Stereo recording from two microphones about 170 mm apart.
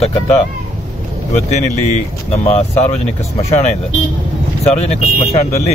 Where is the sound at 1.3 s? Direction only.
45° left (ahead or behind).